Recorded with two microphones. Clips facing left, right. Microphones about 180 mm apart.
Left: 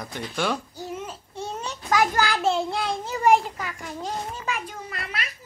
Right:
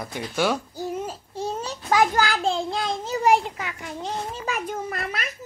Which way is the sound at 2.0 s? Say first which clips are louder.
Right 1 dB; 20° right (ahead or behind).